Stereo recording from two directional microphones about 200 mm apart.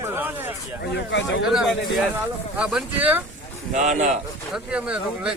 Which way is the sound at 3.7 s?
35° right (ahead or behind).